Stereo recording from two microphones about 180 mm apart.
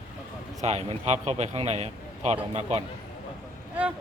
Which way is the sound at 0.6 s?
35° right (ahead or behind).